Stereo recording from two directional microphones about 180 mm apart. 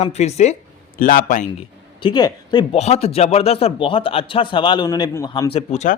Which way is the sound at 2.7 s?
35° left (ahead or behind).